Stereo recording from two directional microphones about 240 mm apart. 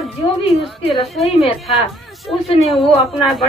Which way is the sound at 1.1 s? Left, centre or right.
Centre.